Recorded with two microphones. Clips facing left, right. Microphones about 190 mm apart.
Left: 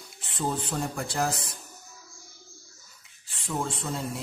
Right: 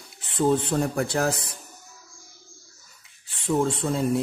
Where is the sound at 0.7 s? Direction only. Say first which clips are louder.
Right 6 dB; 60° right (ahead or behind).